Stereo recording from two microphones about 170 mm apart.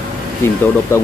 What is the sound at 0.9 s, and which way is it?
Speech, 15° left (ahead or behind).